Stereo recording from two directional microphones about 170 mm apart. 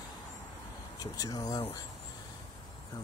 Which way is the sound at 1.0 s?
20° left (ahead or behind).